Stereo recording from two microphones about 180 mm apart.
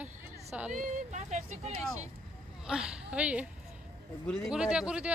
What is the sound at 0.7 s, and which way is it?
Speech, 45° right (ahead or behind).